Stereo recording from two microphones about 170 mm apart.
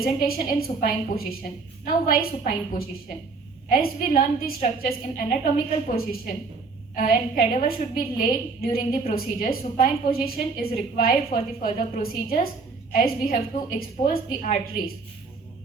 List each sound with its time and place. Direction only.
0.0 s a woman's voice: 60° left (ahead or behind)